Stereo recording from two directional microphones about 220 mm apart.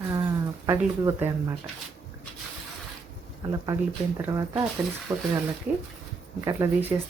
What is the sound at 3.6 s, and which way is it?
Speech, 15° right (ahead or behind).